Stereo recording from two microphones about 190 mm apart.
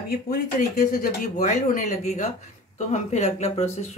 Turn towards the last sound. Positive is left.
turn(degrees=35)  # may be behind; listen again after turning